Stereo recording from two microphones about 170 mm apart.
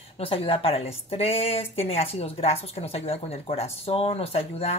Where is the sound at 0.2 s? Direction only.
35° left (ahead or behind).